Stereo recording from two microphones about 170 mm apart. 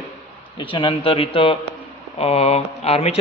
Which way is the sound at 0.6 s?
30° left (ahead or behind).